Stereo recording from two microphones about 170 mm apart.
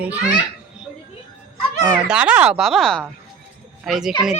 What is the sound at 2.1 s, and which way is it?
A woman's voice, 5° right (ahead or behind).